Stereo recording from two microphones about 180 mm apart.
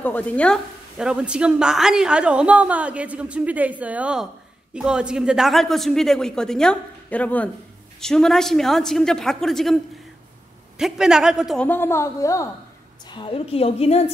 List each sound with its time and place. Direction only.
0.0 s a woman's voice: 10° left (ahead or behind)
0.9 s a woman's voice: 5° right (ahead or behind)
10.8 s a woman's voice: 5° right (ahead or behind)
11.6 s a woman's voice: 10° left (ahead or behind); by 14.1 s 35° left (ahead or behind)